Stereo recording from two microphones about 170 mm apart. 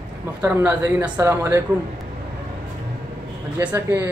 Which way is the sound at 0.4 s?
10° right (ahead or behind).